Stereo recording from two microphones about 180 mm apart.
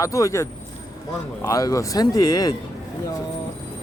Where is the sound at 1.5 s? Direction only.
20° left (ahead or behind).